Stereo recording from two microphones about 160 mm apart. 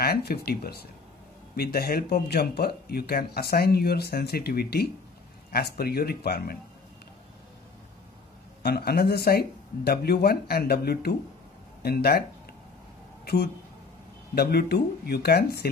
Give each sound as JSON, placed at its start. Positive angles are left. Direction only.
{"t": 0.0, "sound": "speech", "side_deg": 75}
{"t": 8.6, "sound": "speech", "side_deg": 75}